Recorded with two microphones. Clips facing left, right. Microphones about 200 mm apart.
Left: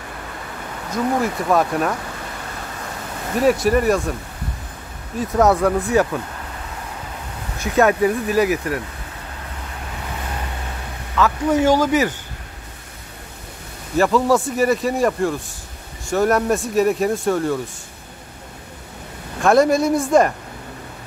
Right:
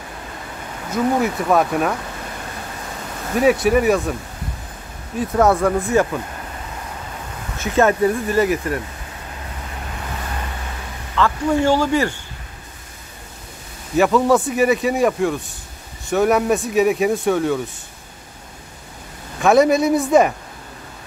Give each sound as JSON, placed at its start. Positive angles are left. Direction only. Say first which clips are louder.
{"t": 0.9, "sound": "speech", "louder": "right 2 dB", "side_deg": 0}
{"t": 3.3, "sound": "speech", "louder": "right 1 dB", "side_deg": 0}
{"t": 5.2, "sound": "speech", "louder": "even", "side_deg": 0}
{"t": 7.6, "sound": "speech", "louder": "even", "side_deg": 0}
{"t": 8.0, "sound": "speech", "louder": "even", "side_deg": 10}
{"t": 11.1, "sound": "speech", "louder": "left 1 dB", "side_deg": 5}
{"t": 13.9, "sound": "speech", "louder": "right 1 dB", "side_deg": 0}
{"t": 19.4, "sound": "speech", "louder": "right 1 dB", "side_deg": 0}